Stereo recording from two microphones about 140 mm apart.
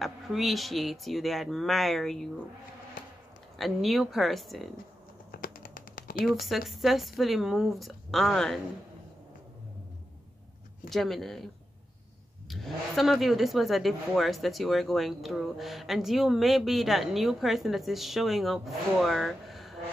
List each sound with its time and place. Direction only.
0.0 s speech: centre (ahead or behind)
3.5 s speech: centre (ahead or behind)
5.3 s a sound: 85° left
6.2 s speech: centre (ahead or behind)
10.9 s speech: centre (ahead or behind)
12.4 s speech: centre (ahead or behind)